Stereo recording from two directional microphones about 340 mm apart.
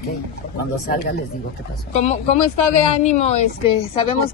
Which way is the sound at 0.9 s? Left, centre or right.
Left.